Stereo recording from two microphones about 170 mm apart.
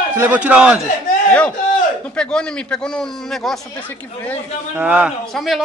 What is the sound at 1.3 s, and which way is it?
Speech, 10° left (ahead or behind).